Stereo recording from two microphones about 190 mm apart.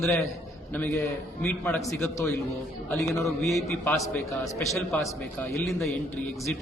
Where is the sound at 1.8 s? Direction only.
15° left (ahead or behind).